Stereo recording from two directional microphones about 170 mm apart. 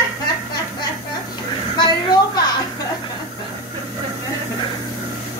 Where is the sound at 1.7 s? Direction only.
25° left (ahead or behind).